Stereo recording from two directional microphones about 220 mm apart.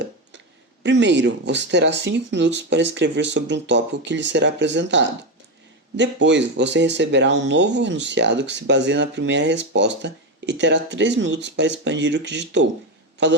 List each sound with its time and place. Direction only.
0.8 s speech: 55° right (ahead or behind)